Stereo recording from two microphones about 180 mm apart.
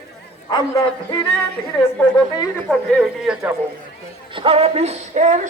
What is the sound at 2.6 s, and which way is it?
Speech, centre (ahead or behind).